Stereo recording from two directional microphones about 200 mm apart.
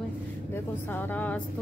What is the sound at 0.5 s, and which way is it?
Speech, 10° left (ahead or behind).